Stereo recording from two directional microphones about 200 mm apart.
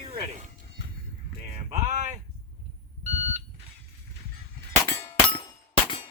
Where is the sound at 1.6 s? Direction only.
35° right (ahead or behind).